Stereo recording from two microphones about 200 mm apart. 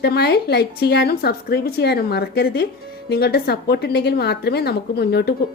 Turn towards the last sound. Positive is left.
turn(degrees=55)  # may be behind; listen again after turning